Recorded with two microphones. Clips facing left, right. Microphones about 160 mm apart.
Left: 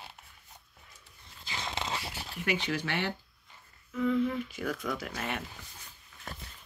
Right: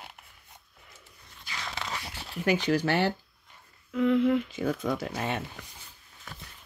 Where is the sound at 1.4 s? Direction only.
25° left (ahead or behind).